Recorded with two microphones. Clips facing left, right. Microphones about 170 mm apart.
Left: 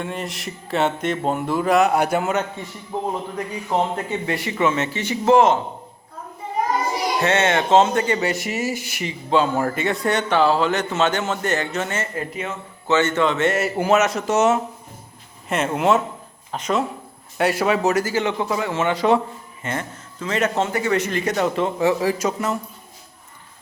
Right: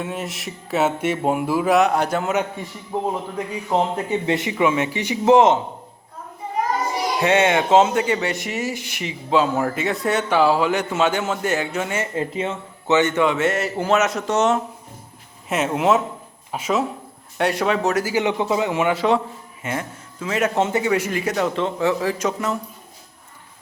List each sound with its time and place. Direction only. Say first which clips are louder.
0.0 s speech: even; centre (ahead or behind)
3.9 s speech: right 3 dB; 20° right (ahead or behind)
7.2 s speech: right 3 dB; 15° right (ahead or behind)
12.1 s a man's voice: right 4 dB; 25° right (ahead or behind)
13.0 s speech: even; 15° right (ahead or behind)
13.6 s speech: left 1 dB; 10° left (ahead or behind)
18.0 s a man's voice: right 1 dB; 15° right (ahead or behind)
20.6 s a man's voice: right 2 dB; 20° right (ahead or behind)
20.9 s speech: even; 10° right (ahead or behind)